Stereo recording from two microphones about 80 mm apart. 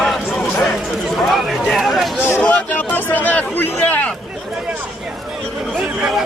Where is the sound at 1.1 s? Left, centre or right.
Centre.